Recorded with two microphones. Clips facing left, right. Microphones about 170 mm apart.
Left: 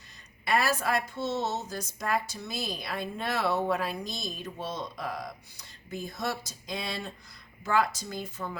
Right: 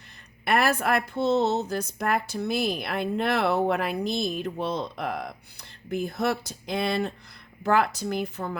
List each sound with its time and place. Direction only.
0.4 s a woman's voice: 60° right (ahead or behind)